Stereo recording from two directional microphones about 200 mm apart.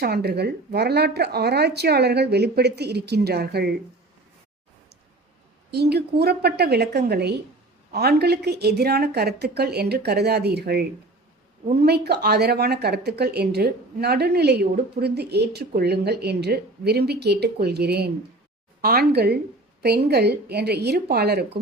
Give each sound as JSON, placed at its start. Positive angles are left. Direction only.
{"t": 0.0, "sound": "speech", "side_deg": -50}
{"t": 5.7, "sound": "speech", "side_deg": -55}